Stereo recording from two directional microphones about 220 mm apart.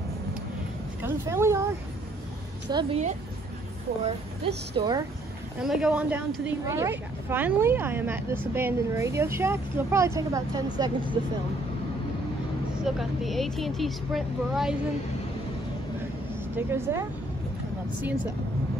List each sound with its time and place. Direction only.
1.0 s a woman's voice: 10° right (ahead or behind)
2.7 s a woman's voice: 25° right (ahead or behind)
5.6 s a woman's voice: centre (ahead or behind)
12.8 s speech: centre (ahead or behind)
16.5 s a woman's voice: 10° right (ahead or behind)